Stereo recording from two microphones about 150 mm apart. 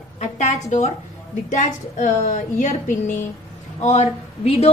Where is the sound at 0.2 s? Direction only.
55° left (ahead or behind).